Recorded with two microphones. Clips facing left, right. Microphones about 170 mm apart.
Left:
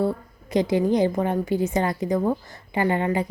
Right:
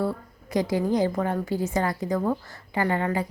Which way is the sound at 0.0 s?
20° left (ahead or behind).